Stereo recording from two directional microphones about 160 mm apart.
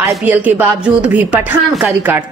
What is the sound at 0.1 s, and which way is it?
Speech, 10° right (ahead or behind).